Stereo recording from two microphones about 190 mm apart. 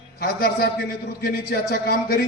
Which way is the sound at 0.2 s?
55° left (ahead or behind).